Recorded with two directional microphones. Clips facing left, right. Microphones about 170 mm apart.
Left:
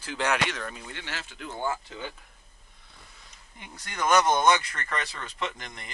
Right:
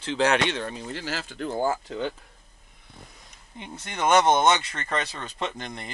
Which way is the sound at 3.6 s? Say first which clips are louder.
Right 3 dB; 25° right (ahead or behind).